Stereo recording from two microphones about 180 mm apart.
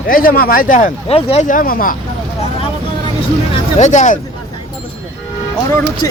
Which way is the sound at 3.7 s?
40° left (ahead or behind).